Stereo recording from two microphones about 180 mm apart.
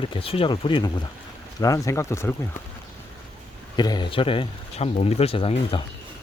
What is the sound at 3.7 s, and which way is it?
Speech, 25° left (ahead or behind).